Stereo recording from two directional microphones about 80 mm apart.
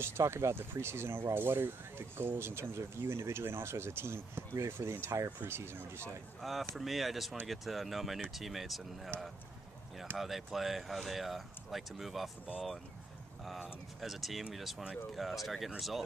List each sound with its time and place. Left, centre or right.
0.0 s speech: right
6.7 s speech: centre
10.1 s speech: centre